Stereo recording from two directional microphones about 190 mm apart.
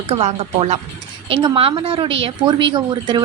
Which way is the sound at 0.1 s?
35° right (ahead or behind).